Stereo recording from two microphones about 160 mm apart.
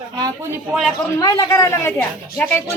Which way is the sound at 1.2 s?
25° left (ahead or behind).